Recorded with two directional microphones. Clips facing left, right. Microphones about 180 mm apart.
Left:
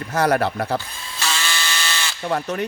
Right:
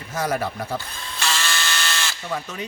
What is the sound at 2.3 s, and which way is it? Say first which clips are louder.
Speech: left 9 dB; 60° left (ahead or behind).